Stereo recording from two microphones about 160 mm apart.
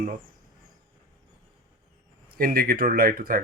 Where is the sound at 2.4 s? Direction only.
65° right (ahead or behind).